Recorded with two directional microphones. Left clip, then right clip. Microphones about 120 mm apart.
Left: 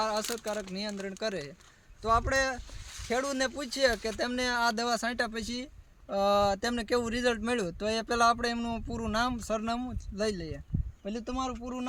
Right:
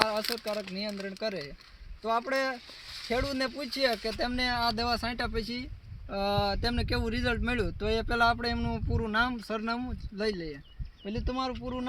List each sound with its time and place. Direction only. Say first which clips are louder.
0.3 s speech: right 1 dB; 35° left (ahead or behind); by 9.6 s 55° left (ahead or behind)
9.6 s speech: even; 40° left (ahead or behind)